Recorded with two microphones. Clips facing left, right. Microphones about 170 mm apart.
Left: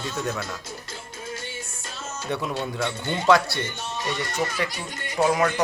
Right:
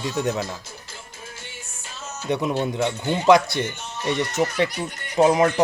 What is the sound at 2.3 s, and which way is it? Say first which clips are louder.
Speech: right 5 dB; 20° right (ahead or behind).